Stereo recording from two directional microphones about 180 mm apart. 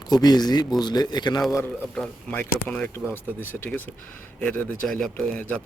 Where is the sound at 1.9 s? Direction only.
5° left (ahead or behind).